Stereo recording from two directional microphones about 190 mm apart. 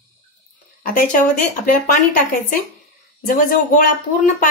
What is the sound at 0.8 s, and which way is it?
Speech, 45° left (ahead or behind).